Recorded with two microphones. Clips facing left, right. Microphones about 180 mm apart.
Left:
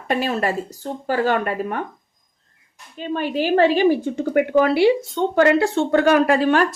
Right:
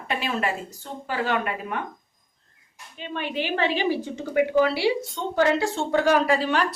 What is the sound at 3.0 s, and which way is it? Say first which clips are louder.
Speech: left 7 dB; 40° left (ahead or behind).